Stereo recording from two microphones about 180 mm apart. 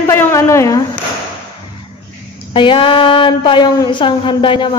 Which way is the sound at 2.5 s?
30° left (ahead or behind).